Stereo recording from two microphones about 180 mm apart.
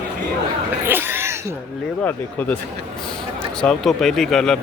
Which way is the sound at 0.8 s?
10° right (ahead or behind).